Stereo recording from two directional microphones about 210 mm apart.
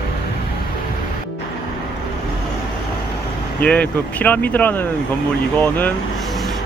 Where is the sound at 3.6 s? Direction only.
5° left (ahead or behind).